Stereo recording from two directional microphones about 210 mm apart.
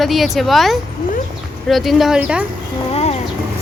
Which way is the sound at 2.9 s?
30° left (ahead or behind).